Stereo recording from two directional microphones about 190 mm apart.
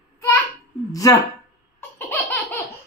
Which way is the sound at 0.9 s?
20° left (ahead or behind).